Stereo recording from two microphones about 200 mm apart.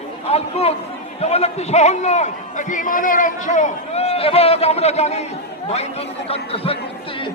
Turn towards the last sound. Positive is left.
turn(degrees=30)  # may be behind; listen again after turning